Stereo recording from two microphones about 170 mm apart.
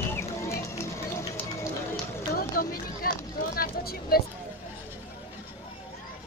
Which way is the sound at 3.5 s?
65° left (ahead or behind).